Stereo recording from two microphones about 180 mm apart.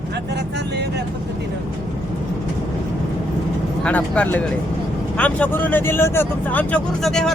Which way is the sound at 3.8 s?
5° left (ahead or behind).